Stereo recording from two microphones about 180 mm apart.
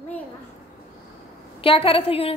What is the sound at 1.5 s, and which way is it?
Speech, 30° left (ahead or behind).